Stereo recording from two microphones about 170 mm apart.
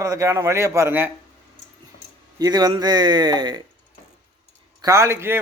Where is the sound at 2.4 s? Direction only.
20° right (ahead or behind).